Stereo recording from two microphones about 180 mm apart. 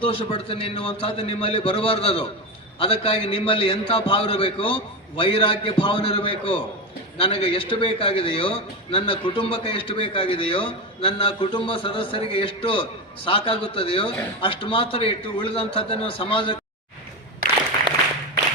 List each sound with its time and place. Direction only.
0.0 s a man's voice: 30° left (ahead or behind)